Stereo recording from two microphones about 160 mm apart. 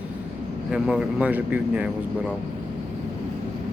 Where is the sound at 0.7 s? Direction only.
5° right (ahead or behind).